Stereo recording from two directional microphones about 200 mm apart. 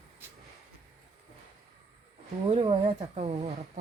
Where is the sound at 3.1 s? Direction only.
35° right (ahead or behind).